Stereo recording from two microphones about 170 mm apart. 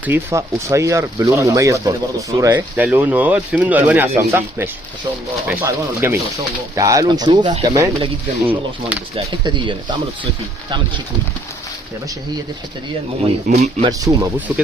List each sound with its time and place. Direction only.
0.0 s speech: 15° right (ahead or behind)
13.5 s speech: 45° right (ahead or behind)
13.8 s speech: 20° right (ahead or behind)
14.3 s speech: 10° right (ahead or behind)